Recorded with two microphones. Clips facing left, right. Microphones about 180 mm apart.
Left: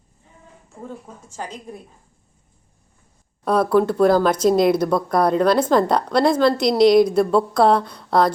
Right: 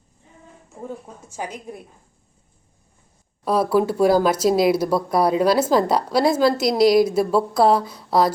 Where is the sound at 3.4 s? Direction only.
5° right (ahead or behind).